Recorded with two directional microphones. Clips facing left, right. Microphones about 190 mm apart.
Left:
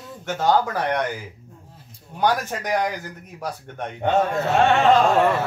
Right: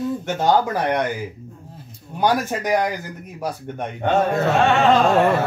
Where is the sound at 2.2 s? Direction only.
10° right (ahead or behind).